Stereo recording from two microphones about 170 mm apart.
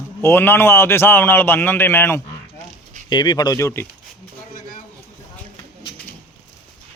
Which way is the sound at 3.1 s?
25° left (ahead or behind).